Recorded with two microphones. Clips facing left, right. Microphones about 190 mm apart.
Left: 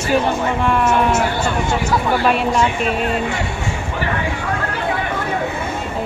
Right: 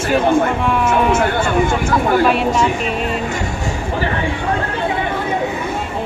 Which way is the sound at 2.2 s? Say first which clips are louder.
Right 1 dB; centre (ahead or behind).